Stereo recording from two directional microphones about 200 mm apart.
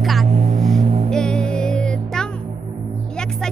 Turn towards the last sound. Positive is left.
turn(degrees=5)  # may be behind; listen again after turning